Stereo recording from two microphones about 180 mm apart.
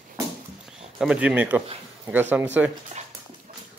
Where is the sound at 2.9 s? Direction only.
40° right (ahead or behind).